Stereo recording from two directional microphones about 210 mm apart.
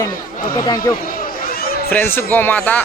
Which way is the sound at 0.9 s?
40° left (ahead or behind).